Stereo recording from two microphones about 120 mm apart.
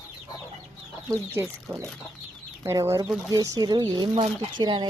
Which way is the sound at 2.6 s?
25° right (ahead or behind).